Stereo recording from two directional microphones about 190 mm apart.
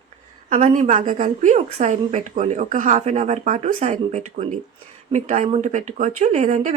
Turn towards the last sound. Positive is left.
turn(degrees=-40)  # may be behind; listen again after turning